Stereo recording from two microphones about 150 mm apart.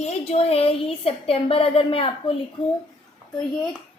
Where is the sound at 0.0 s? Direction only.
45° left (ahead or behind).